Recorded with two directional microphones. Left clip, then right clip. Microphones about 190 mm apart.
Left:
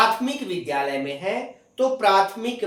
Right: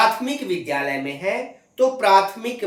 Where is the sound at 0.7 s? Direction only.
20° right (ahead or behind).